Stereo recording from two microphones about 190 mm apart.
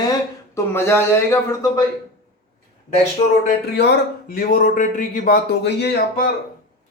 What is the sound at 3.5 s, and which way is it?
Speech, 60° left (ahead or behind).